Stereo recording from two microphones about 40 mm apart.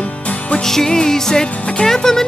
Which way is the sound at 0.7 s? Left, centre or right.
Centre.